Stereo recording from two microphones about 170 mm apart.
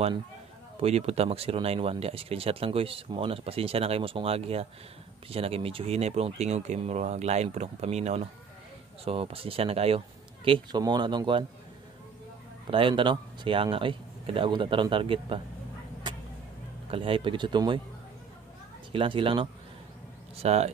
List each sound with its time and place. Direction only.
0.7 s speech: 35° right (ahead or behind)
12.7 s speech: 30° right (ahead or behind)
16.9 s speech: 30° right (ahead or behind)
18.9 s speech: 30° right (ahead or behind)